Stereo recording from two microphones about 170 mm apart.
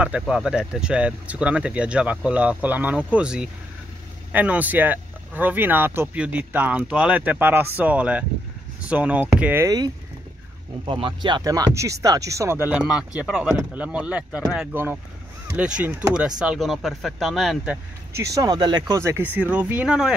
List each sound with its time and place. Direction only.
0.0 s speech: 5° right (ahead or behind)
10.9 s speech: 30° right (ahead or behind); by 17.7 s centre (ahead or behind)
18.3 s speech: 20° right (ahead or behind); by 20.2 s 5° right (ahead or behind)